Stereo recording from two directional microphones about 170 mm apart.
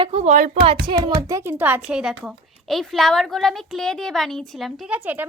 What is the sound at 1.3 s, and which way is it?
A woman's voice, 15° right (ahead or behind).